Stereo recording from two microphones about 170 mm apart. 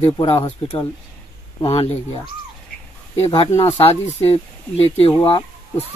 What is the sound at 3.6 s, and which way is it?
Speech, 35° left (ahead or behind).